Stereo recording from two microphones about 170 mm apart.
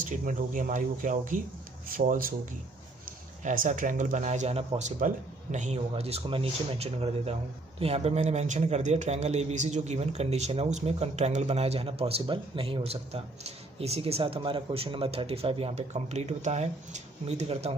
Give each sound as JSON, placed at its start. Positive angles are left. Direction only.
{"t": 0.0, "sound": "a man's voice", "side_deg": -50}